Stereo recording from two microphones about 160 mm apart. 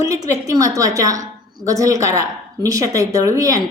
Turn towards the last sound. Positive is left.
turn(degrees=-20)  # may be behind; listen again after turning